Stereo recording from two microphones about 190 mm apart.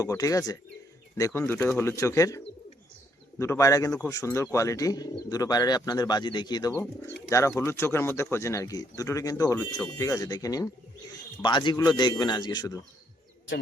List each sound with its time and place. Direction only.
0.0 s speech: 20° left (ahead or behind)